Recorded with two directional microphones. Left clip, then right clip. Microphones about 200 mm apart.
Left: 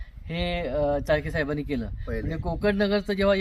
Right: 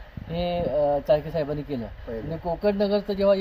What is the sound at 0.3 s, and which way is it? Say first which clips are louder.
Speech: right 3 dB; centre (ahead or behind).